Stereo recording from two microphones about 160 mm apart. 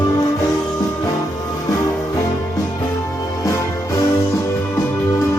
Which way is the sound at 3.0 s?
20° left (ahead or behind).